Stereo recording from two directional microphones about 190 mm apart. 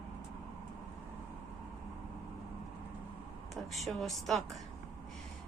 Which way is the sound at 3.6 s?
Centre (ahead or behind).